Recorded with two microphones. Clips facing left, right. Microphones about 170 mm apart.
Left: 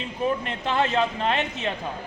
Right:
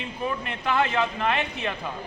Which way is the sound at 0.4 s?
30° left (ahead or behind).